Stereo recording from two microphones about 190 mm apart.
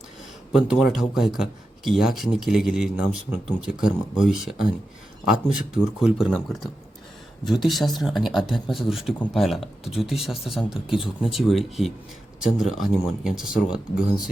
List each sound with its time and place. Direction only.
0.5 s speech: centre (ahead or behind)